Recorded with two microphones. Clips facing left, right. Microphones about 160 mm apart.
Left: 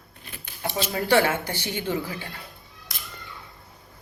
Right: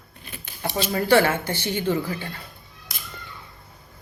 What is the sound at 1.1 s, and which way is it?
Speech, 15° left (ahead or behind).